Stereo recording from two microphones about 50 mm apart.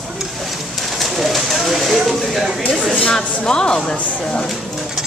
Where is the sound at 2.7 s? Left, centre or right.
Centre.